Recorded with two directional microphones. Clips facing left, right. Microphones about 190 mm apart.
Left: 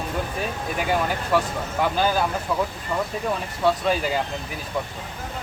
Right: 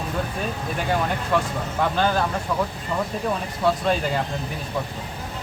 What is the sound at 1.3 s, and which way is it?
Speech, 5° left (ahead or behind).